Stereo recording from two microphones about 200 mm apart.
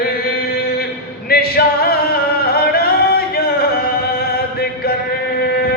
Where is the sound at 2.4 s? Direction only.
50° left (ahead or behind).